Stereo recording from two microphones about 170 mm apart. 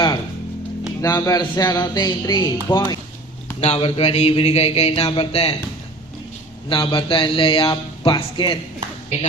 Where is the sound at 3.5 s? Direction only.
35° left (ahead or behind).